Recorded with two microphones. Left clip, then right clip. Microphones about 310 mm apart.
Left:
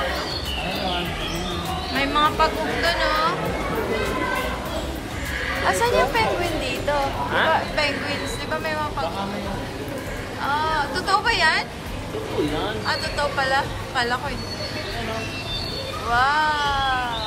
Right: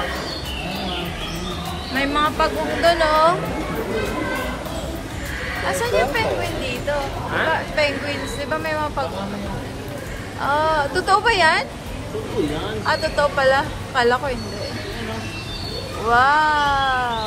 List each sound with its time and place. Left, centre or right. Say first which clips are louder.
2.0 s speech: even; centre
5.7 s speech: even; centre
10.4 s speech: right 4 dB; centre
12.8 s speech: right 8 dB; centre
16.1 s speech: right 4 dB; centre